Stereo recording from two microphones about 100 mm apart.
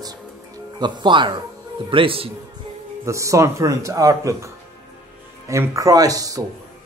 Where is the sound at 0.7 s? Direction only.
50° right (ahead or behind); by 2.3 s 65° right (ahead or behind).